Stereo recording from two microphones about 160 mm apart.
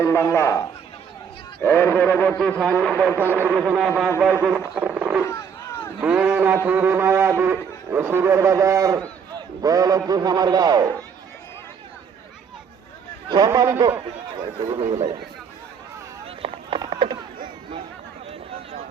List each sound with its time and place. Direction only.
0.0 s a sound: 15° left (ahead or behind)
2.4 s speech: 5° left (ahead or behind)
3.2 s a man's voice: 15° right (ahead or behind)
5.2 s a sound: 15° left (ahead or behind)
6.0 s a man's voice: 5° right (ahead or behind); by 10.9 s 25° right (ahead or behind)
13.3 s speech: 25° right (ahead or behind)
16.2 s run: 35° right (ahead or behind)